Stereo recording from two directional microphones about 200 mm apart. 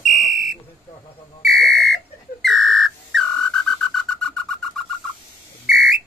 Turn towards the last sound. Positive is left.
turn(degrees=0)  # may be behind; listen again after turning